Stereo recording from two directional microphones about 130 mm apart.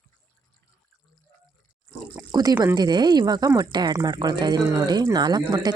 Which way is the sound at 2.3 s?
30° right (ahead or behind).